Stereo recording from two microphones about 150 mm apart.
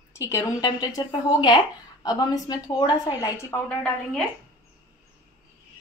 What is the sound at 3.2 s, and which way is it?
Speech, 15° left (ahead or behind).